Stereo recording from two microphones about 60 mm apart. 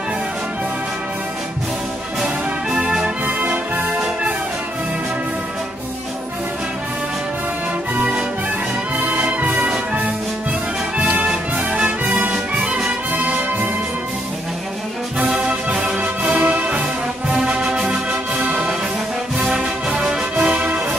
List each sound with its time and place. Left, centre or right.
2.2 s music: centre
8.9 s music: right
11.0 s music: right
15.1 s brass instrument: right
15.8 s music: right
17.3 s music: centre
19.5 s music: centre